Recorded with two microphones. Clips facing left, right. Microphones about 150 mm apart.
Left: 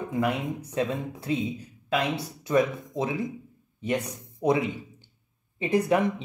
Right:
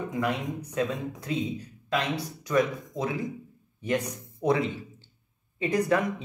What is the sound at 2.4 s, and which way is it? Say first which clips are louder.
Speech: left 2 dB; 25° left (ahead or behind).